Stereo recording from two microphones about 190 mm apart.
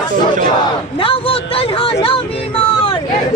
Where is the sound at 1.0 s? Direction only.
30° left (ahead or behind).